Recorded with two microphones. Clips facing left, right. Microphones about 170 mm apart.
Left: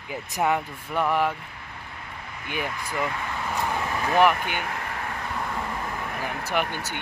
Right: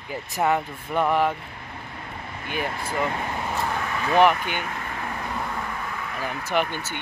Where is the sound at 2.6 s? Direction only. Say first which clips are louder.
Right 3 dB; 35° right (ahead or behind).